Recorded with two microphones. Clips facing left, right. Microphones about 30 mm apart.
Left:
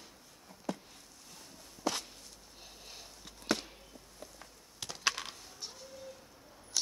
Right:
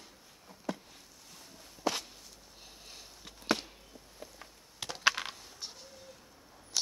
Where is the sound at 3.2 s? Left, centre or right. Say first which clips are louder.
Right 2 dB; centre.